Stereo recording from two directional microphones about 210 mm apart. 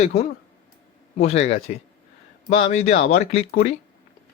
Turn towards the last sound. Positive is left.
turn(degrees=30)  # may be behind; listen again after turning